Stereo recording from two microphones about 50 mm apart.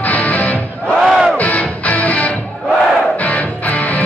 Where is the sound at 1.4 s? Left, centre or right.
Left.